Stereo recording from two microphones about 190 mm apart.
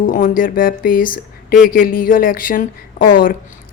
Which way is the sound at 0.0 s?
45° left (ahead or behind).